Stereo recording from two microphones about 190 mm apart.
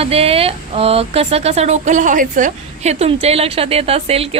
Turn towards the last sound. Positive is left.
turn(degrees=-30)  # may be behind; listen again after turning